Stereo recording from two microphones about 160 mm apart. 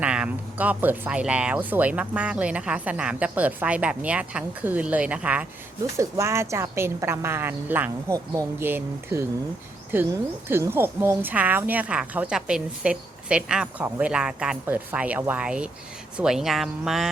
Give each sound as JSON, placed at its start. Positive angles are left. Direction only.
{"t": 0.0, "sound": "a woman's voice", "side_deg": -5}